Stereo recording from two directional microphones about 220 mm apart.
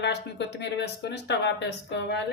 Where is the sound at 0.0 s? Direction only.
50° left (ahead or behind).